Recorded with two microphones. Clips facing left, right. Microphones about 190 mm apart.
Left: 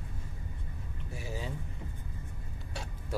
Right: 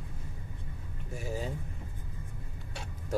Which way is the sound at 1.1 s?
45° right (ahead or behind).